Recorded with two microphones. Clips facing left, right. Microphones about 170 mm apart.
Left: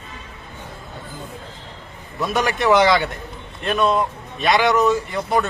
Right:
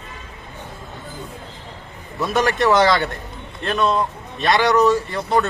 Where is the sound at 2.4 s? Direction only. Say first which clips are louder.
Left 1 dB; 20° left (ahead or behind).